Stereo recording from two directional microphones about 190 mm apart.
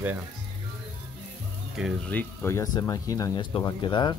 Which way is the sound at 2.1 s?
15° left (ahead or behind).